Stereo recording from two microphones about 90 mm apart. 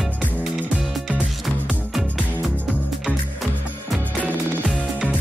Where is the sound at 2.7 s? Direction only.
Centre (ahead or behind).